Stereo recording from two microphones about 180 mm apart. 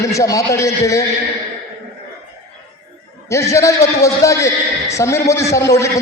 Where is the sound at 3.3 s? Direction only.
15° left (ahead or behind).